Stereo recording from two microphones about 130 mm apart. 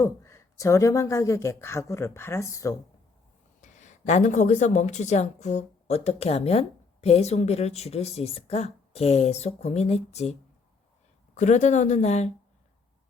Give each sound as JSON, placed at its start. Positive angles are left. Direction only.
{"t": 0.0, "sound": "speech", "side_deg": 20}
{"t": 3.6, "sound": "a woman's voice", "side_deg": 70}
{"t": 11.3, "sound": "a woman's voice", "side_deg": 65}